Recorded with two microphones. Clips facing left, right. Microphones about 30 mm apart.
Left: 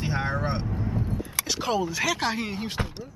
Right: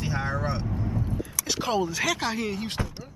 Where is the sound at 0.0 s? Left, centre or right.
Centre.